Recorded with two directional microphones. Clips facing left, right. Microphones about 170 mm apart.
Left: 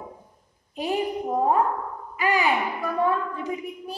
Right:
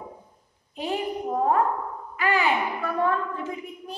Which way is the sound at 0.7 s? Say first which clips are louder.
Left 2 dB; 10° left (ahead or behind).